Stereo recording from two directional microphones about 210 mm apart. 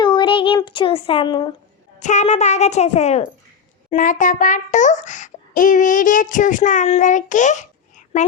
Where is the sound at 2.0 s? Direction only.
35° left (ahead or behind).